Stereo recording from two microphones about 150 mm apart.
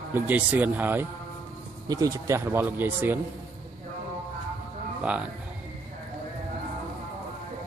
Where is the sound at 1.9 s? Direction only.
25° right (ahead or behind).